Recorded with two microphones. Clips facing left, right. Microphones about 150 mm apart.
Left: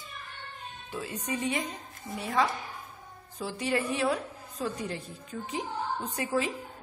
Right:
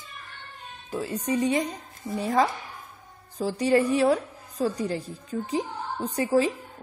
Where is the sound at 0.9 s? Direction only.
40° right (ahead or behind).